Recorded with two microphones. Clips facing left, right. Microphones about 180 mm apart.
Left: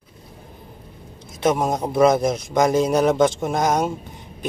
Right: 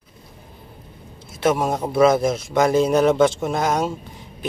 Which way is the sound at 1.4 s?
5° right (ahead or behind).